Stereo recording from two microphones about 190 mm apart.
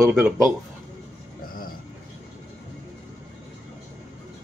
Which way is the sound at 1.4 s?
50° left (ahead or behind).